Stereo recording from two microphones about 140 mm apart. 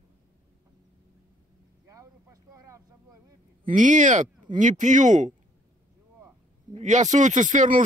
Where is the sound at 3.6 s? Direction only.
65° right (ahead or behind).